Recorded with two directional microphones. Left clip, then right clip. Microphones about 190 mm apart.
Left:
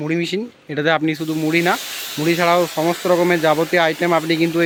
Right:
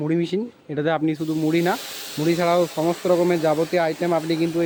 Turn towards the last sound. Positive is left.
turn(degrees=0)  # may be behind; listen again after turning